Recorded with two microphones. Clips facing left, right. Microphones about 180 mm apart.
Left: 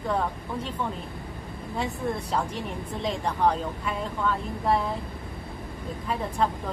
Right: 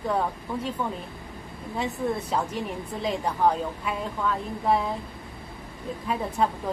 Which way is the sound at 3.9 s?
Centre (ahead or behind).